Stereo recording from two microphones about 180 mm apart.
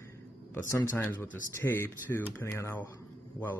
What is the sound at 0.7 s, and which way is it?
Speech, 15° left (ahead or behind).